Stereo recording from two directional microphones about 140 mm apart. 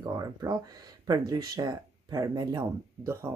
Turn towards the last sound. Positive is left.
turn(degrees=-20)  # may be behind; listen again after turning